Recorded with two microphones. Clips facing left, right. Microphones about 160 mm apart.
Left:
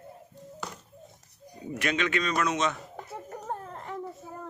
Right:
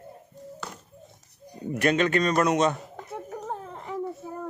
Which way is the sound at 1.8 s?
40° right (ahead or behind).